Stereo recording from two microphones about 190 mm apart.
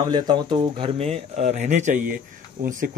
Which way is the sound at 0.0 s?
25° right (ahead or behind).